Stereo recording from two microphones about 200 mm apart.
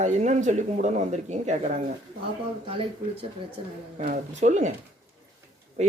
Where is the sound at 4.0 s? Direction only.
35° right (ahead or behind).